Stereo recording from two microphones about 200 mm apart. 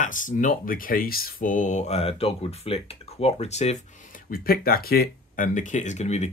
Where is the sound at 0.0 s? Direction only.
40° left (ahead or behind).